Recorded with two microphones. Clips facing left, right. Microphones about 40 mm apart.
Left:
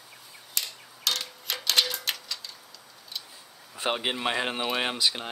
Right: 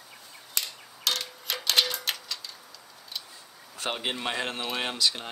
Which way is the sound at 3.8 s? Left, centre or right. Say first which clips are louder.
Left 3 dB; centre.